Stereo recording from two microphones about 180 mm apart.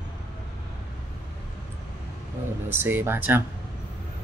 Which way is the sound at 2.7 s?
10° right (ahead or behind).